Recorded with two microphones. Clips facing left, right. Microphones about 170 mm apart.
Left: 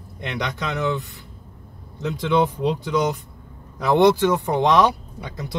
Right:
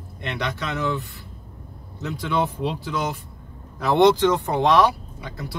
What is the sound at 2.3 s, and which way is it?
Speech, 15° left (ahead or behind).